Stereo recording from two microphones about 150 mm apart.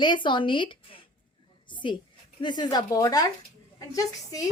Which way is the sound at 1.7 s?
30° left (ahead or behind).